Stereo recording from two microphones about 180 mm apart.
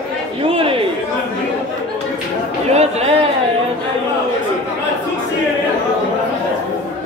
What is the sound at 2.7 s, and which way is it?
Chatter, 35° right (ahead or behind).